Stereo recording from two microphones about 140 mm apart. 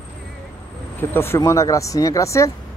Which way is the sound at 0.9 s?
15° left (ahead or behind).